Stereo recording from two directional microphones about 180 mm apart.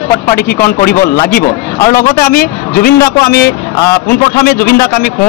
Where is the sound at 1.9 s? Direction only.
45° left (ahead or behind).